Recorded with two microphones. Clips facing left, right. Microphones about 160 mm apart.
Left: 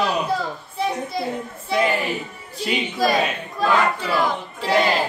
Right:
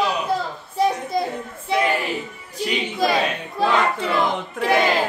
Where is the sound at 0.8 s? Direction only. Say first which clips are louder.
Right 4 dB; 45° right (ahead or behind).